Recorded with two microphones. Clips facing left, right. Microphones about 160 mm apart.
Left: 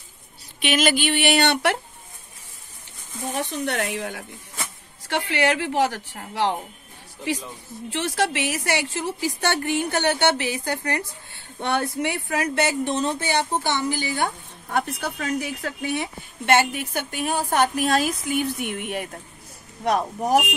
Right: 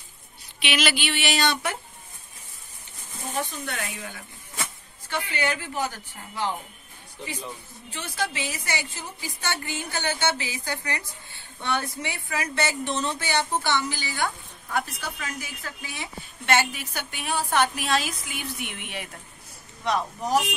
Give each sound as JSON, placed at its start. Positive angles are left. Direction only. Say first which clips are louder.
{"t": 0.6, "sound": "a woman's voice", "louder": "left 5 dB", "side_deg": 45}
{"t": 3.3, "sound": "a woman's voice", "louder": "left 5 dB", "side_deg": 70}
{"t": 7.9, "sound": "a woman's voice", "louder": "left 7 dB", "side_deg": 75}
{"t": 12.8, "sound": "speech", "louder": "left 4 dB", "side_deg": 40}
{"t": 13.2, "sound": "speech", "louder": "left 3 dB", "side_deg": 25}
{"t": 13.7, "sound": "a woman's voice", "louder": "left 4 dB", "side_deg": 55}